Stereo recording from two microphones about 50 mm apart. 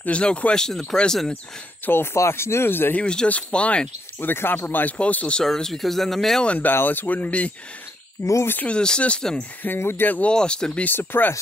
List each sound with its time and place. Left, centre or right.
0.0 s speech: left
2.1 s speech: left
2.9 s speech: left
4.2 s speech: left
5.4 s speech: centre
6.6 s speech: left
8.2 s speech: left
8.6 s speech: centre
9.8 s speech: left
10.0 s speech: left
10.3 s speech: centre
10.9 s speech: left